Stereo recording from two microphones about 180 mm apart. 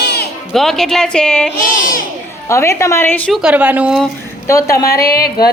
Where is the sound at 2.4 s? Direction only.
15° left (ahead or behind).